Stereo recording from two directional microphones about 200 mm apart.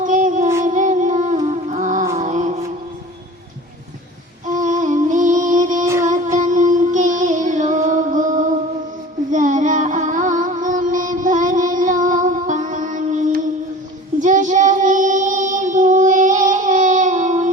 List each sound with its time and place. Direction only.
0.0 s a sound: 40° right (ahead or behind)
0.6 s music: 40° right (ahead or behind)
2.1 s mantra: 40° right (ahead or behind)
4.4 s music: 40° right (ahead or behind)
5.8 s child singing: 15° right (ahead or behind)
6.4 s music: 40° right (ahead or behind)
14.2 s child singing: 40° right (ahead or behind)